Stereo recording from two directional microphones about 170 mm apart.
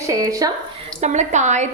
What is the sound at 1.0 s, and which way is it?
Speech, 45° right (ahead or behind).